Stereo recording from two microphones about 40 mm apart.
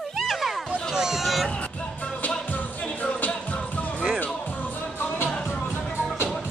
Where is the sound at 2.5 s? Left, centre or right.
Left.